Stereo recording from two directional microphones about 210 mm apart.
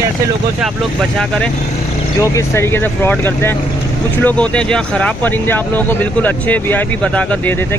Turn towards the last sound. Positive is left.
turn(degrees=5)  # may be behind; listen again after turning